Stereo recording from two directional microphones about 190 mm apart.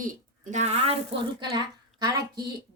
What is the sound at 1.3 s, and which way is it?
Speech, 20° right (ahead or behind).